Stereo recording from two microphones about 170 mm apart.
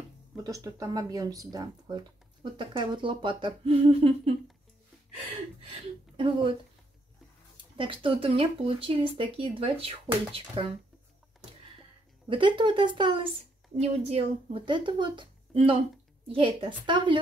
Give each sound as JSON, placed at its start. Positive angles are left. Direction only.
{"t": 0.4, "sound": "speech", "side_deg": -20}
{"t": 6.1, "sound": "speech", "side_deg": -30}
{"t": 7.7, "sound": "speech", "side_deg": -30}
{"t": 12.3, "sound": "speech", "side_deg": -30}